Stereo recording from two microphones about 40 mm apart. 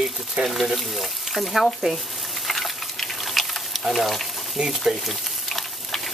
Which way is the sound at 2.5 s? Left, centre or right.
Centre.